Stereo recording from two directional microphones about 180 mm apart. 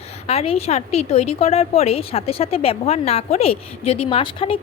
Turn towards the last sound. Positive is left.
turn(degrees=30)  # may be behind; listen again after turning